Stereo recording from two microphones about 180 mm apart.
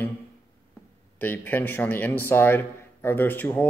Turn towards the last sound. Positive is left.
turn(degrees=10)  # may be behind; listen again after turning